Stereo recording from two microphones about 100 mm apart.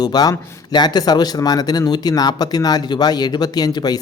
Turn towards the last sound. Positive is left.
turn(degrees=40)  # may be behind; listen again after turning